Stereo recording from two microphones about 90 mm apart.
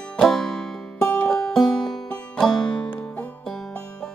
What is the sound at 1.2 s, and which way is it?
Music, 5° left (ahead or behind).